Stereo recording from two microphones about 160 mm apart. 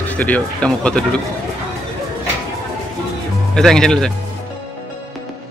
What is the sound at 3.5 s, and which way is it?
Speech, 5° left (ahead or behind).